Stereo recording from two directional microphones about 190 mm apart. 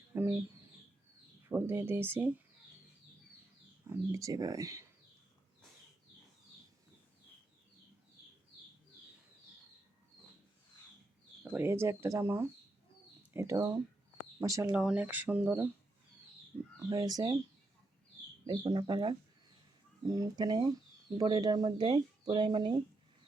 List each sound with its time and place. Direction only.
0.1 s speech: 10° right (ahead or behind)
1.5 s speech: 10° right (ahead or behind)
3.8 s speech: 15° right (ahead or behind)
11.5 s speech: 10° right (ahead or behind)
14.7 s speech: 5° right (ahead or behind)
16.9 s speech: 20° right (ahead or behind)
18.4 s speech: 25° right (ahead or behind)